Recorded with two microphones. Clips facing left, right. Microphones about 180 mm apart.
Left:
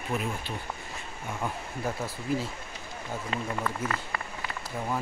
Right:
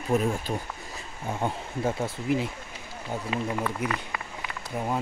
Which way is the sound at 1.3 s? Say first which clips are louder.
Right 4 dB; 30° right (ahead or behind).